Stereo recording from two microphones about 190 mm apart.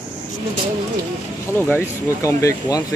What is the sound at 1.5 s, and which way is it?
Speech, 10° left (ahead or behind).